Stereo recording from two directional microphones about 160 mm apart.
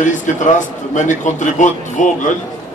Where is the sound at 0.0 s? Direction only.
50° left (ahead or behind).